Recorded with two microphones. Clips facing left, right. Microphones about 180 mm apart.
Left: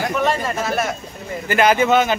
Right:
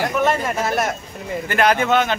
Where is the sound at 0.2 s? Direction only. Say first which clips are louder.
Right 1 dB; 5° right (ahead or behind).